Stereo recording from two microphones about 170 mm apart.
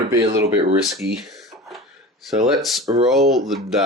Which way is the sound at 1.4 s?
Centre (ahead or behind).